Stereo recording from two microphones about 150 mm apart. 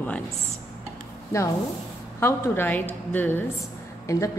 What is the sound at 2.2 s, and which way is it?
A woman's voice, 15° left (ahead or behind).